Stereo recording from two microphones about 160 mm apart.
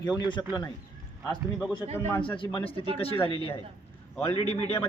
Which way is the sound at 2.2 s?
30° left (ahead or behind).